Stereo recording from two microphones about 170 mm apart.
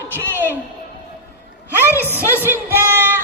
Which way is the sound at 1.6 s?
10° right (ahead or behind).